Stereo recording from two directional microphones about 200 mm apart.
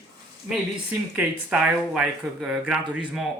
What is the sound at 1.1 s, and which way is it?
Speech, 5° right (ahead or behind).